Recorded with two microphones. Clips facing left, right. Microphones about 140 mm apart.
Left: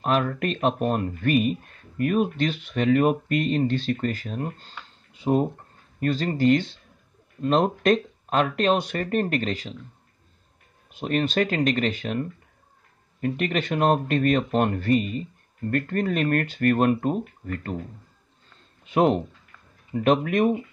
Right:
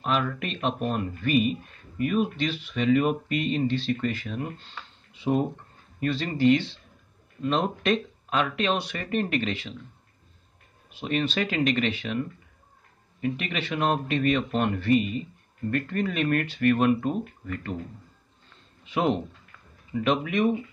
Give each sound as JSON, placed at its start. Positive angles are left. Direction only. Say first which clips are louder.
{"t": 0.0, "sound": "speech", "louder": "left 4 dB", "side_deg": 45}
{"t": 10.9, "sound": "speech", "louder": "left 3 dB", "side_deg": 45}
{"t": 18.9, "sound": "speech", "louder": "left 5 dB", "side_deg": 45}